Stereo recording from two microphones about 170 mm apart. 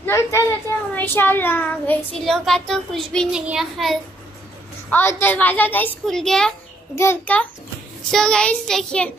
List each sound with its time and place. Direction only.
0.0 s a child's voice: 15° left (ahead or behind); by 4.0 s centre (ahead or behind)
4.9 s a woman's voice: 10° left (ahead or behind)